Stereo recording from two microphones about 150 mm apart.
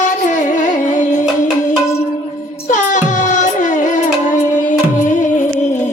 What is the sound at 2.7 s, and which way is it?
Music, 55° left (ahead or behind).